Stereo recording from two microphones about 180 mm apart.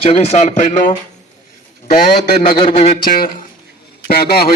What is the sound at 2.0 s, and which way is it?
Speech, 55° left (ahead or behind).